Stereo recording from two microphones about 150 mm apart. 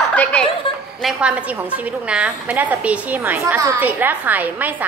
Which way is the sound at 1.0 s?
5° right (ahead or behind).